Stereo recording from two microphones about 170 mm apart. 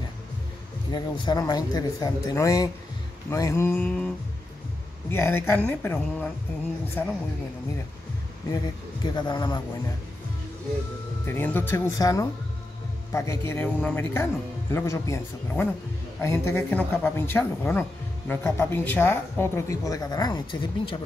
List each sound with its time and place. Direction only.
0.9 s speech: 25° left (ahead or behind); by 4.1 s 5° left (ahead or behind)
5.1 s speech: 15° left (ahead or behind)
8.5 s speech: 25° left (ahead or behind)
11.2 s speech: 10° left (ahead or behind); by 21.0 s 25° left (ahead or behind)